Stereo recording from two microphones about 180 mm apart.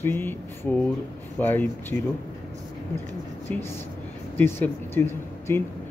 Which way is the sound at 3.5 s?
10° left (ahead or behind).